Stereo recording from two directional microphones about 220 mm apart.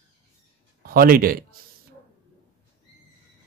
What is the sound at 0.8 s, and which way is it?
Speech, 40° right (ahead or behind).